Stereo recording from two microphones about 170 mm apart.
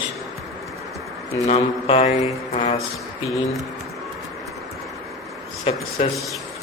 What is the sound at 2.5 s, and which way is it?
Music, 35° left (ahead or behind).